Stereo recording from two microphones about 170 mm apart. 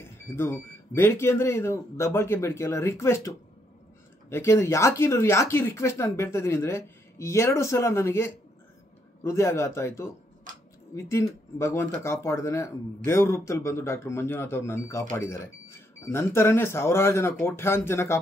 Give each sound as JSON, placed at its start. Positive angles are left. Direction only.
{"t": 0.0, "sound": "speech", "side_deg": 15}